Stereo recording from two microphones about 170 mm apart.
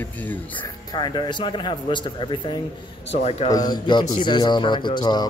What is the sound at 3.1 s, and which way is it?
Speech, 40° left (ahead or behind).